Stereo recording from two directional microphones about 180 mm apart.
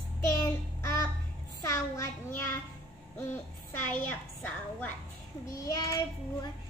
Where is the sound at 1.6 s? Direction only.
20° left (ahead or behind).